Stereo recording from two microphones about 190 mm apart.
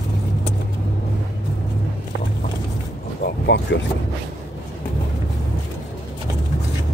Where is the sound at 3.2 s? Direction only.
65° left (ahead or behind).